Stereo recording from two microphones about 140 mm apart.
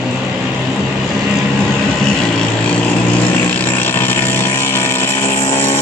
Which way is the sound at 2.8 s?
10° left (ahead or behind).